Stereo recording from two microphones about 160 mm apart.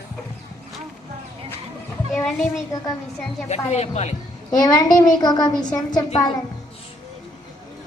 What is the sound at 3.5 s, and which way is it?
Speech, 45° left (ahead or behind).